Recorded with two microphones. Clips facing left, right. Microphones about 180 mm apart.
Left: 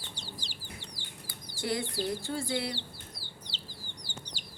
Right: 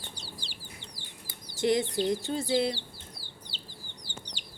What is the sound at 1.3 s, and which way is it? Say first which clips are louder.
Speech: right 7 dB; 20° right (ahead or behind).